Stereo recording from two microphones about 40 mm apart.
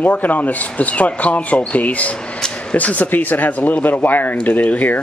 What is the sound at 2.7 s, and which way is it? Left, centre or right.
Speech, left.